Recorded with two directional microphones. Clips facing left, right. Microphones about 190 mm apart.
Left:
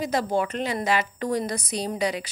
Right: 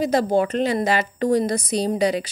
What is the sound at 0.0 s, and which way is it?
A woman's voice, 35° right (ahead or behind).